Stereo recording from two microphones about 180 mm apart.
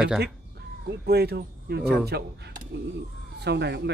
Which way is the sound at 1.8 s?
5° right (ahead or behind).